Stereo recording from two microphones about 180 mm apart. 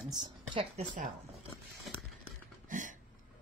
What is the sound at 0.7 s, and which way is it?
Speech, 45° right (ahead or behind).